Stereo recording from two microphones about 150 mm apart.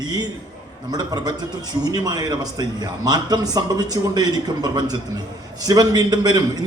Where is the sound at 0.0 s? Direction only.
25° right (ahead or behind).